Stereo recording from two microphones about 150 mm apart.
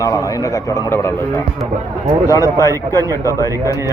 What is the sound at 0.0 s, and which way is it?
Speech, 20° left (ahead or behind).